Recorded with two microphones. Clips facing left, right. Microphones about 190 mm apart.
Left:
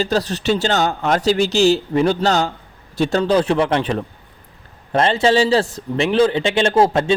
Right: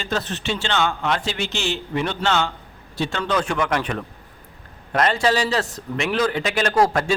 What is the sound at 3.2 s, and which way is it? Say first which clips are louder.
A man's voice: left 5 dB; 30° left (ahead or behind).